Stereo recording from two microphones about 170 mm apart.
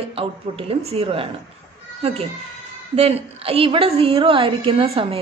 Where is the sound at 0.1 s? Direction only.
35° right (ahead or behind).